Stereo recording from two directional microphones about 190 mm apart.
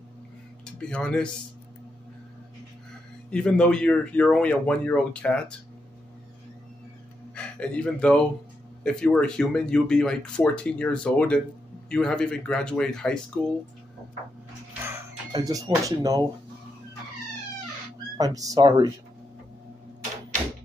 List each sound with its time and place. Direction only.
0.7 s speech: 5° left (ahead or behind)
3.3 s speech: 5° left (ahead or behind)
7.3 s speech: 5° left (ahead or behind)
14.9 s speech: 20° right (ahead or behind)
18.1 s speech: 20° right (ahead or behind)